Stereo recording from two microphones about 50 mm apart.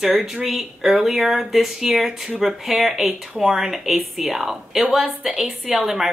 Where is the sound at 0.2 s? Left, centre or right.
Centre.